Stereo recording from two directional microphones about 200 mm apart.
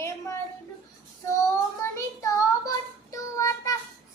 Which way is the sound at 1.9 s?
15° left (ahead or behind).